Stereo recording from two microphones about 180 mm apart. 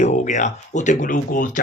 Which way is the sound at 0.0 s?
40° left (ahead or behind).